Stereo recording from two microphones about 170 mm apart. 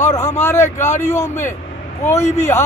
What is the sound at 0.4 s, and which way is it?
Speech, 15° left (ahead or behind).